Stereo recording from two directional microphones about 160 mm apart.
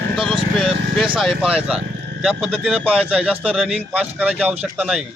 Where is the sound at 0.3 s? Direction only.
30° right (ahead or behind).